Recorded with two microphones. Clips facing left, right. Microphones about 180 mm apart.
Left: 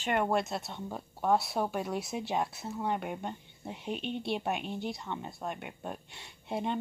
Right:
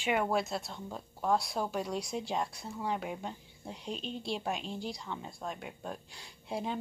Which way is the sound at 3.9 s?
65° left (ahead or behind).